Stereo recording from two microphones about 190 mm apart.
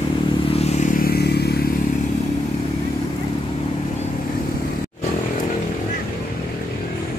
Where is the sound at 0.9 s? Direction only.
55° left (ahead or behind).